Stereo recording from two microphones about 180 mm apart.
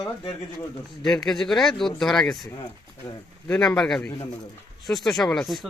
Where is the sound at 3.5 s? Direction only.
5° left (ahead or behind).